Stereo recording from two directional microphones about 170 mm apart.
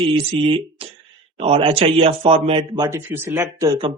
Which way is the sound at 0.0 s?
30° right (ahead or behind).